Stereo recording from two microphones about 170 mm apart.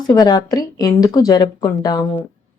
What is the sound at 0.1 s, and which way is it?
A woman's voice, 20° left (ahead or behind).